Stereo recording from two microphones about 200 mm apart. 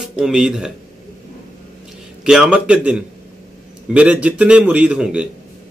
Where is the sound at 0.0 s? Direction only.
Centre (ahead or behind).